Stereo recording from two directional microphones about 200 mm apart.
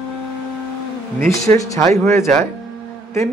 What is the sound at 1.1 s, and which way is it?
A man's voice, 15° left (ahead or behind).